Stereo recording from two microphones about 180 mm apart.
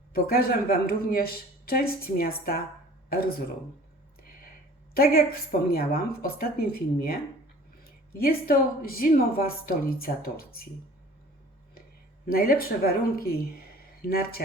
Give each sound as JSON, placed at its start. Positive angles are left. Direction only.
{"t": 0.1, "sound": "a man's voice", "side_deg": 55}
{"t": 4.9, "sound": "a man's voice", "side_deg": 55}
{"t": 8.2, "sound": "a man's voice", "side_deg": 55}
{"t": 12.2, "sound": "a man's voice", "side_deg": 55}